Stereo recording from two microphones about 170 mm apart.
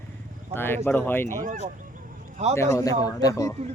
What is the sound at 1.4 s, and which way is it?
Speech, 50° right (ahead or behind).